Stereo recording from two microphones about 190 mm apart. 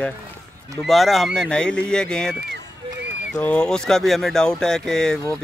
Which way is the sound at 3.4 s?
5° left (ahead or behind).